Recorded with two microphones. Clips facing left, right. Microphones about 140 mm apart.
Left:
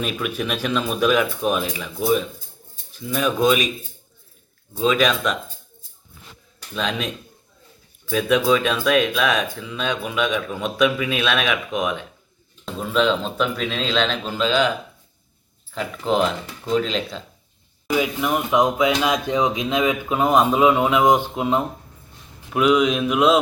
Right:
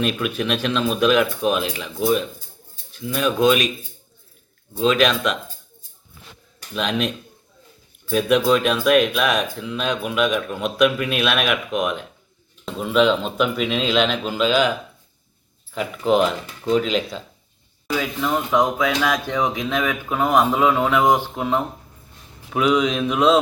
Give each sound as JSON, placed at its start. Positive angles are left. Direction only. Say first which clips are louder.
{"t": 0.0, "sound": "speech", "louder": "right 3 dB", "side_deg": 5}
{"t": 4.9, "sound": "speech", "louder": "right 1 dB", "side_deg": 0}
{"t": 6.7, "sound": "speech", "louder": "right 3 dB", "side_deg": -5}
{"t": 8.1, "sound": "speech", "louder": "right 1 dB", "side_deg": 0}
{"t": 15.7, "sound": "speech", "louder": "right 3 dB", "side_deg": -5}
{"t": 17.9, "sound": "speech", "louder": "left 1 dB", "side_deg": 15}
{"t": 22.4, "sound": "speech", "louder": "left 1 dB", "side_deg": 0}